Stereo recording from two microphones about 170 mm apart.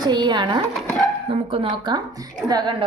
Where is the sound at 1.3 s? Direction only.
35° right (ahead or behind).